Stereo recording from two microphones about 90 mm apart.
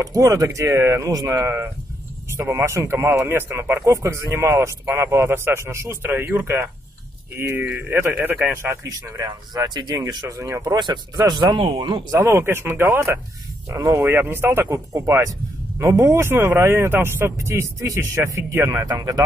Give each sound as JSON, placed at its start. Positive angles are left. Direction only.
{"t": 0.0, "sound": "speech", "side_deg": -35}
{"t": 8.8, "sound": "speech", "side_deg": -45}
{"t": 10.2, "sound": "speech", "side_deg": -35}
{"t": 12.1, "sound": "speech", "side_deg": -35}
{"t": 18.9, "sound": "speech", "side_deg": -40}